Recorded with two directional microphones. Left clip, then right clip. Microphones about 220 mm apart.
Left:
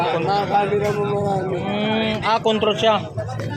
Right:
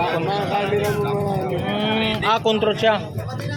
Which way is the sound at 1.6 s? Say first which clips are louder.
Right 2 dB; 5° left (ahead or behind).